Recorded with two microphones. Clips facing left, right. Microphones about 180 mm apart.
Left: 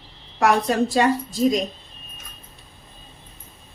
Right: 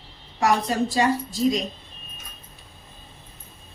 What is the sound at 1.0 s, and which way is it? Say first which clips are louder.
Speech: left 2 dB; 60° left (ahead or behind).